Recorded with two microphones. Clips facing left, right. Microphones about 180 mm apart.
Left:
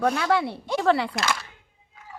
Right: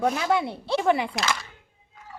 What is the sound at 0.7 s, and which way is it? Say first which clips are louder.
Speech: left 1 dB; 15° right (ahead or behind).